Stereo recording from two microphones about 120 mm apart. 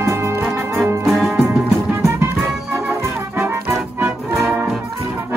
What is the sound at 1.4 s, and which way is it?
Music, 20° right (ahead or behind).